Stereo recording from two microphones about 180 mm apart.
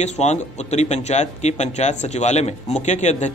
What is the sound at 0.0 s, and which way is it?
Speech, 40° left (ahead or behind).